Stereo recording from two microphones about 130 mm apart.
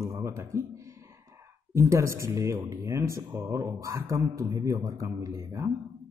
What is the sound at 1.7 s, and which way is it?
A man's voice, 25° right (ahead or behind).